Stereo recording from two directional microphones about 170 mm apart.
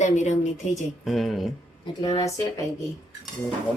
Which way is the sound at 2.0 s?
25° left (ahead or behind).